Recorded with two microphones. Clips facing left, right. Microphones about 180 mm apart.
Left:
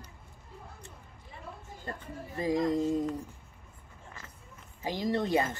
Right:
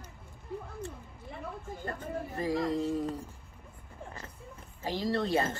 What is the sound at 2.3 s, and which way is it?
Speech, 15° left (ahead or behind).